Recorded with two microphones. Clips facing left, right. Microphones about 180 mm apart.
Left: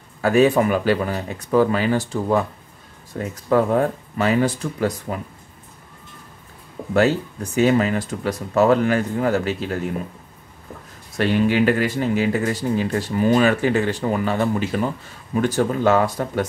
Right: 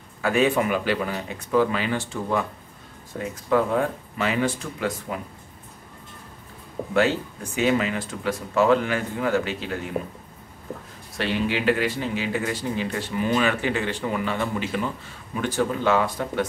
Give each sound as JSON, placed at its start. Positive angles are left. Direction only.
{"t": 0.2, "sound": "speech", "side_deg": 40}
{"t": 6.9, "sound": "speech", "side_deg": 40}
{"t": 11.1, "sound": "speech", "side_deg": 45}